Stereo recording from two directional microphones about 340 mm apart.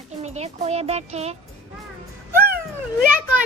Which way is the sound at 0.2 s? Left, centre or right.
Centre.